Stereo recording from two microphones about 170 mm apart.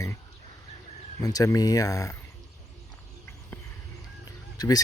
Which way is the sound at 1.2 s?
20° left (ahead or behind).